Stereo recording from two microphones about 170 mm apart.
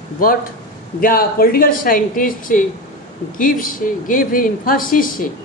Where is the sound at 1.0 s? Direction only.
55° left (ahead or behind).